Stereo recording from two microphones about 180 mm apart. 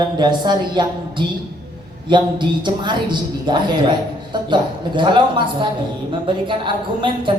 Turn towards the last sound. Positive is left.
turn(degrees=-25)  # may be behind; listen again after turning